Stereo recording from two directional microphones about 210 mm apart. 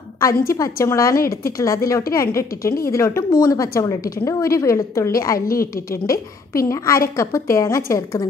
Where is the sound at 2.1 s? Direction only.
15° left (ahead or behind).